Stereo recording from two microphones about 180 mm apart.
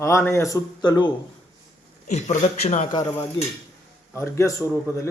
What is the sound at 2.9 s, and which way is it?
Dishes, 20° left (ahead or behind).